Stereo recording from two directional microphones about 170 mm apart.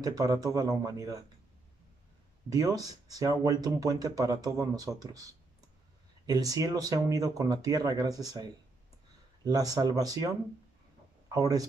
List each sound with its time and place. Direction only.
0.0 s speech: 20° right (ahead or behind)
2.5 s speech: 20° right (ahead or behind)